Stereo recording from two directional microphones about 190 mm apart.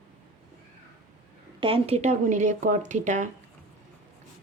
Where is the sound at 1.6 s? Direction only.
30° right (ahead or behind).